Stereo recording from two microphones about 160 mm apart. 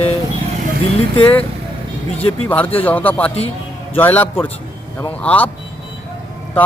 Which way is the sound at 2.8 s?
10° left (ahead or behind).